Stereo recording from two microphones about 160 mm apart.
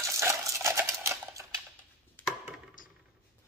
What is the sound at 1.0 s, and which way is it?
Typewriter, 20° right (ahead or behind).